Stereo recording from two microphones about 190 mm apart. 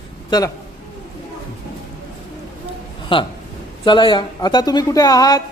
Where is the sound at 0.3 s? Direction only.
20° left (ahead or behind).